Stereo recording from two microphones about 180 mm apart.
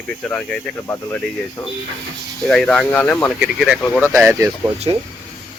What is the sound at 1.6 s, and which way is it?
Speech, 20° left (ahead or behind).